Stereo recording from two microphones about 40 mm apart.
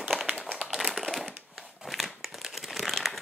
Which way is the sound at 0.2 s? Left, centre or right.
Centre.